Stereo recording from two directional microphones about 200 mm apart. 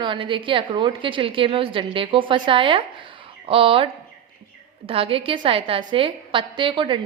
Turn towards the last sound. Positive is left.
turn(degrees=-25)  # may be behind; listen again after turning